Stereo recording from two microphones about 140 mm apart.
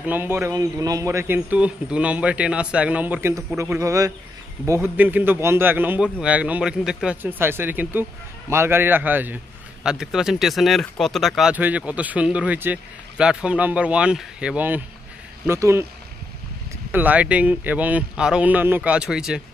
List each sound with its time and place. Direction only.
0.0 s speech: 15° right (ahead or behind)
11.5 s speech: 10° right (ahead or behind)
16.9 s speech: 10° right (ahead or behind)